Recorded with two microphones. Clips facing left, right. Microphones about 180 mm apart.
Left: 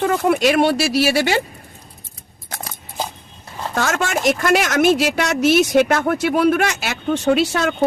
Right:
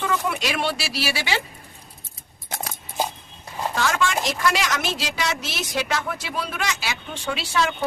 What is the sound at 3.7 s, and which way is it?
Speech, 50° left (ahead or behind).